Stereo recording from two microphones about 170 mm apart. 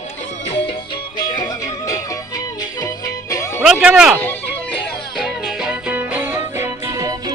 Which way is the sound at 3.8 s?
5° right (ahead or behind).